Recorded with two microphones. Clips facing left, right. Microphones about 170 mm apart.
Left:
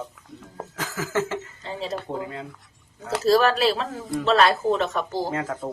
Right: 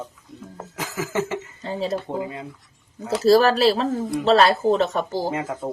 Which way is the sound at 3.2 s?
35° right (ahead or behind).